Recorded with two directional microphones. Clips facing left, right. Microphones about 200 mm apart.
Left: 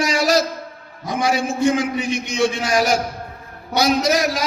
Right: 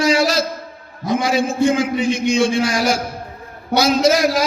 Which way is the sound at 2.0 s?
25° right (ahead or behind).